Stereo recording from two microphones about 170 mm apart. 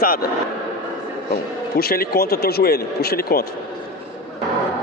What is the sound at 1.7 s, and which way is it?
A man's voice, 65° left (ahead or behind).